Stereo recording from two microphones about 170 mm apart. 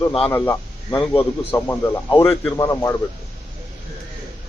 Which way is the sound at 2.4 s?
15° left (ahead or behind).